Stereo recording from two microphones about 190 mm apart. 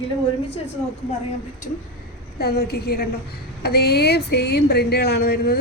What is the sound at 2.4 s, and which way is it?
Speech, 55° left (ahead or behind).